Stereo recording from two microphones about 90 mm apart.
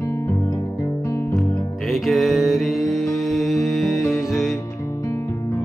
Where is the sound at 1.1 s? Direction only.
35° left (ahead or behind).